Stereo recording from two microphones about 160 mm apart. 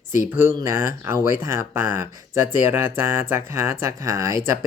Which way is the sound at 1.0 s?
20° right (ahead or behind).